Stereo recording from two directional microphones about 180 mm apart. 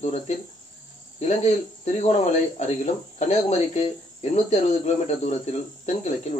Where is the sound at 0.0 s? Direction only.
40° left (ahead or behind).